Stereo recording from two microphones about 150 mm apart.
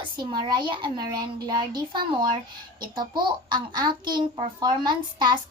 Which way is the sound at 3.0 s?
30° right (ahead or behind).